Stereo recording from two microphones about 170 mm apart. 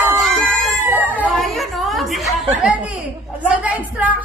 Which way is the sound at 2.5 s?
10° right (ahead or behind).